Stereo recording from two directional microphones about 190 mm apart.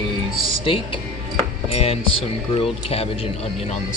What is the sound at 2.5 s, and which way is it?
Speech, 30° left (ahead or behind).